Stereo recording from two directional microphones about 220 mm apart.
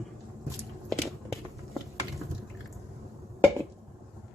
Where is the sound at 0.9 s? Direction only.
Centre (ahead or behind).